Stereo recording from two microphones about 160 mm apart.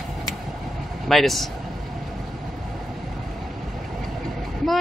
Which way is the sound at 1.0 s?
Centre (ahead or behind).